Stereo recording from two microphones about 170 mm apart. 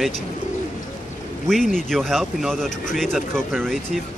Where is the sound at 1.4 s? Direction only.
Centre (ahead or behind).